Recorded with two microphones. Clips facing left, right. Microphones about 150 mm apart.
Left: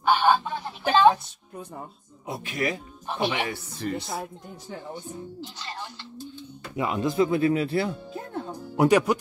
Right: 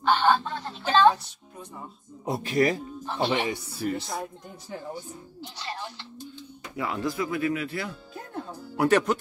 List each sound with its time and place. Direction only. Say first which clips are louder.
0.0 s a sound: left 1 dB; 10° left (ahead or behind)
2.2 s speech: right 5 dB; 35° right (ahead or behind)
3.1 s speech: even; 15° left (ahead or behind)
3.4 s speech: right 2 dB; 5° right (ahead or behind)
6.7 s speech: left 3 dB; 20° left (ahead or behind)
8.5 s music: left 2 dB; 15° left (ahead or behind)